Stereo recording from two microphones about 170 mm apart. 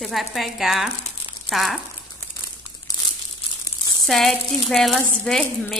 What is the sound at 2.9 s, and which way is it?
Crumpling, 20° left (ahead or behind).